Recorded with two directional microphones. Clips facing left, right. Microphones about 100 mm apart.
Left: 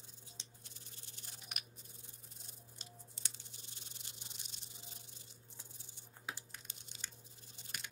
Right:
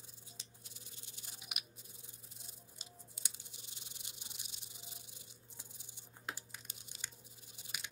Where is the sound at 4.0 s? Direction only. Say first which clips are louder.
Even; 10° right (ahead or behind).